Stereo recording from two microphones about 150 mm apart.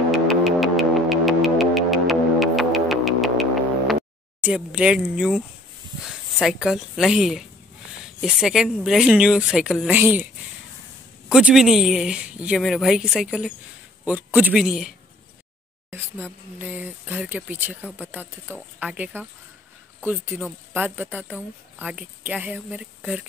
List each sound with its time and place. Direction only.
0.1 s music: centre (ahead or behind)
4.4 s a woman's voice: 10° right (ahead or behind)
11.2 s a woman's voice: 5° right (ahead or behind)
15.9 s speech: 10° right (ahead or behind)